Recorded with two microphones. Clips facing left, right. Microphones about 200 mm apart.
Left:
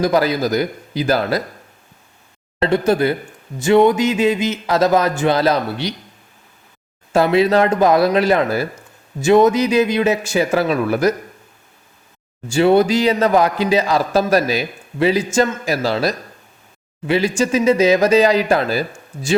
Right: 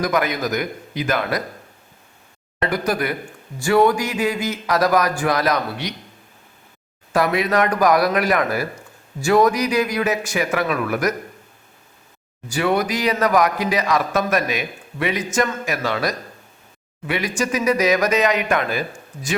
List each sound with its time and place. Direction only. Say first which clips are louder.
0.0 s a man's voice: left 5 dB; 30° left (ahead or behind)
2.6 s a man's voice: left 6 dB; 25° left (ahead or behind)
7.1 s a man's voice: left 5 dB; 25° left (ahead or behind)
12.5 s a man's voice: left 7 dB; 30° left (ahead or behind)